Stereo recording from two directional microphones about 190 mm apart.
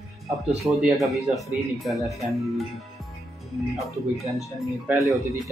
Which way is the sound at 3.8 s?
Centre (ahead or behind).